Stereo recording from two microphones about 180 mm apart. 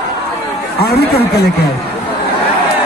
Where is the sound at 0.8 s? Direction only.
60° left (ahead or behind).